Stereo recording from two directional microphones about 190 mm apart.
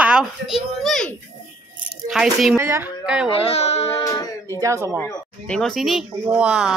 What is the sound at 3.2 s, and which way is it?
Speech, 30° left (ahead or behind).